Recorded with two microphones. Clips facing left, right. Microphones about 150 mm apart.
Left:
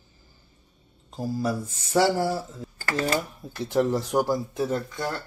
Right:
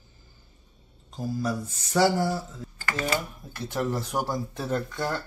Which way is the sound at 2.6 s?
35° left (ahead or behind).